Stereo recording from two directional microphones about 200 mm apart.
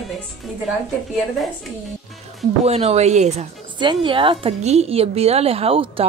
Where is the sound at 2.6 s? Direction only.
30° right (ahead or behind).